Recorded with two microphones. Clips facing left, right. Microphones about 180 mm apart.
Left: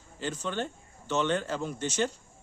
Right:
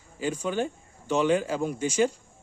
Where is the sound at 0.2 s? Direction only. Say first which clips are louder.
Right 5 dB; 10° right (ahead or behind).